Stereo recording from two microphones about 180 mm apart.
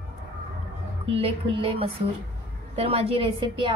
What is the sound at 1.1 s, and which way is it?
A woman's voice, 30° right (ahead or behind).